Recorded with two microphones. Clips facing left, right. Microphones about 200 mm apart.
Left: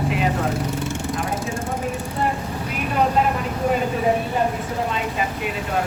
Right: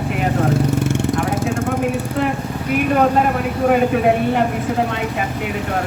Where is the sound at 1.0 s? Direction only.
70° right (ahead or behind).